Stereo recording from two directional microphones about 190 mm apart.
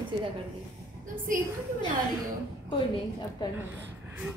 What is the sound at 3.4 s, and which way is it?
Speech, 25° left (ahead or behind).